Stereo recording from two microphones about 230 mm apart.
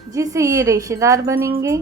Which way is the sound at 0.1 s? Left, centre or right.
Centre.